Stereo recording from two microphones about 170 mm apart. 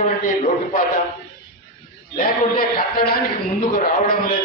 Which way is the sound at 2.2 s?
60° left (ahead or behind).